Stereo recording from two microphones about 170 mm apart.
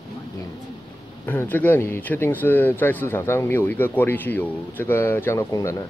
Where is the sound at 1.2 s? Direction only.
10° left (ahead or behind).